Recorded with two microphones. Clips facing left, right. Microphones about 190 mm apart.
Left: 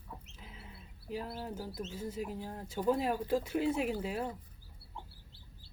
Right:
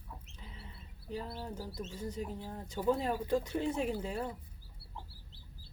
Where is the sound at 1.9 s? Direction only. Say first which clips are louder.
Even; 5° left (ahead or behind).